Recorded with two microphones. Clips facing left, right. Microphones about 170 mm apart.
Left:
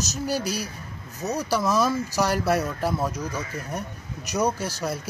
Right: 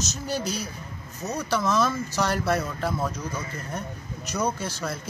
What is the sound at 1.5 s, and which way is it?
Speech, 10° left (ahead or behind).